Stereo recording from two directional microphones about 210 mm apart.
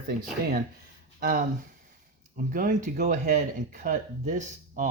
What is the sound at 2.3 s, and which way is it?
Speech, 40° right (ahead or behind).